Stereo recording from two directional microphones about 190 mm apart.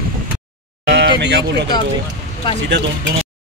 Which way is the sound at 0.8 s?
65° right (ahead or behind).